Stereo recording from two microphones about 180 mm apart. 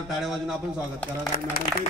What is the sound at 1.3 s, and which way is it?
Speech, 55° left (ahead or behind).